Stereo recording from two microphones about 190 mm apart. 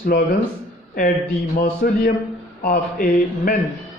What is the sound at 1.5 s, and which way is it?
Speech, 50° left (ahead or behind).